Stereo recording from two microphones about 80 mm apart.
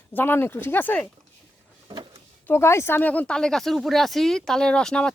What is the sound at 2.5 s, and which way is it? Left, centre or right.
Speech, left.